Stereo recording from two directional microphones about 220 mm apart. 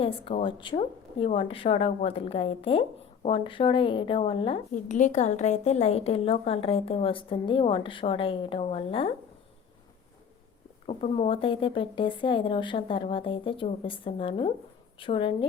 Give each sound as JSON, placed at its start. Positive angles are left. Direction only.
{"t": 0.0, "sound": "a woman's voice", "side_deg": 25}
{"t": 4.7, "sound": "a woman's voice", "side_deg": 35}
{"t": 10.8, "sound": "a woman's voice", "side_deg": 25}